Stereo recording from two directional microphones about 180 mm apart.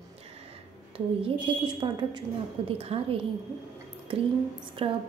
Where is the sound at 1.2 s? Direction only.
30° right (ahead or behind).